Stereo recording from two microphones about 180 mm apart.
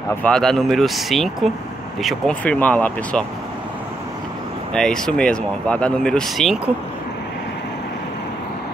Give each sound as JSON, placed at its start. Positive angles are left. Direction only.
{"t": 0.2, "sound": "speech", "side_deg": 5}
{"t": 4.7, "sound": "speech", "side_deg": 5}